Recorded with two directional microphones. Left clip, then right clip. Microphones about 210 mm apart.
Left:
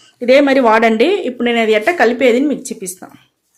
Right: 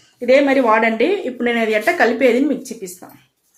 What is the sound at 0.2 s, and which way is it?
Speech, 45° left (ahead or behind).